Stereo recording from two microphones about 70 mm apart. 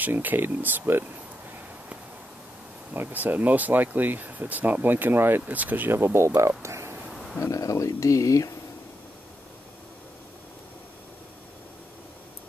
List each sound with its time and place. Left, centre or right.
0.0 s speech: right
2.9 s speech: right
7.3 s speech: left